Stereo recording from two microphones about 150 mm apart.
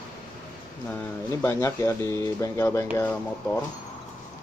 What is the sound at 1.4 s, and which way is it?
Speech, 15° left (ahead or behind).